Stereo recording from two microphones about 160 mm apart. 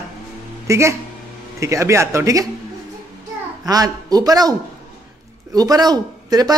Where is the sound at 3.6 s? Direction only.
25° right (ahead or behind).